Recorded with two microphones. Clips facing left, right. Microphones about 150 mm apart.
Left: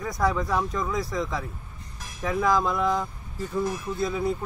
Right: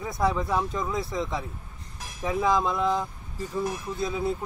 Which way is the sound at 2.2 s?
15° right (ahead or behind).